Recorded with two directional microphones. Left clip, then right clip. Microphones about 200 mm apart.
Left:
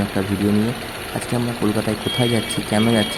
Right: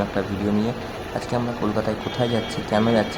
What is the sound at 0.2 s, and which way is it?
Speech, 25° left (ahead or behind).